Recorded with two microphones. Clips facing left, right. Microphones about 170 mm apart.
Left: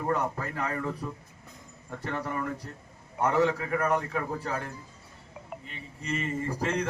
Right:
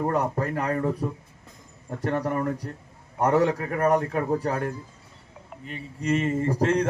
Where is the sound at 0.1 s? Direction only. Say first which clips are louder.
Right 4 dB; 40° right (ahead or behind).